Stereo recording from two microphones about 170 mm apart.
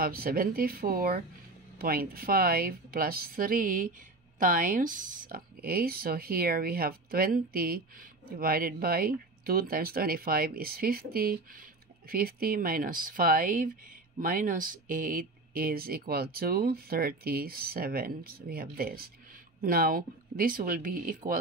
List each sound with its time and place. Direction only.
0.0 s speech: 60° right (ahead or behind)